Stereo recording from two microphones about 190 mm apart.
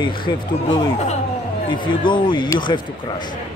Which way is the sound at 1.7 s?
25° left (ahead or behind).